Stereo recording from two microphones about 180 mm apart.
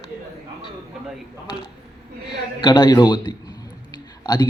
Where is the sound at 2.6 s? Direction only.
25° left (ahead or behind).